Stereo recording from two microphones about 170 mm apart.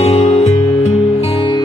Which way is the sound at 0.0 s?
40° left (ahead or behind).